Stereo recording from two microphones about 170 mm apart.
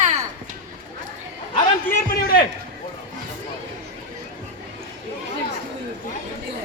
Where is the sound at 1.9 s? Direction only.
60° left (ahead or behind).